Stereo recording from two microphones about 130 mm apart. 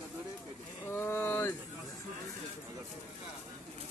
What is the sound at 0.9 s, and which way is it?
Speech, 20° left (ahead or behind).